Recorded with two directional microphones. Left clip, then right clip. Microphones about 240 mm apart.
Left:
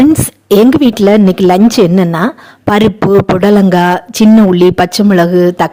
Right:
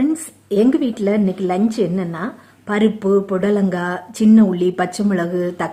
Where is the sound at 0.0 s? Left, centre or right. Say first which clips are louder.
Left 12 dB; left.